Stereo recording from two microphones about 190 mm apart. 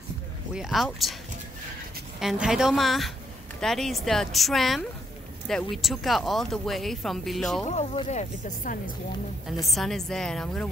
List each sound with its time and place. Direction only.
0.6 s speech: centre (ahead or behind)
2.1 s speech: 5° right (ahead or behind)
7.6 s speech: 35° left (ahead or behind)
9.7 s speech: centre (ahead or behind)